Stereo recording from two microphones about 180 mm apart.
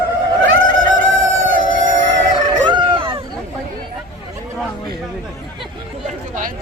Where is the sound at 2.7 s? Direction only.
25° right (ahead or behind).